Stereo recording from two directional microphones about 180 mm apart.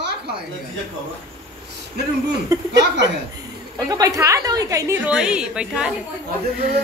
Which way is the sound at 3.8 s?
20° right (ahead or behind).